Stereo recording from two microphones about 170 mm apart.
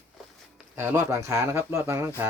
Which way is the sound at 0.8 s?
15° right (ahead or behind).